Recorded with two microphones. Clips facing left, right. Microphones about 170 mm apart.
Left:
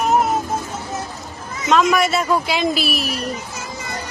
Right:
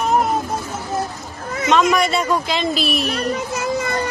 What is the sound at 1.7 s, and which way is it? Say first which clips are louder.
Speech: even; centre (ahead or behind).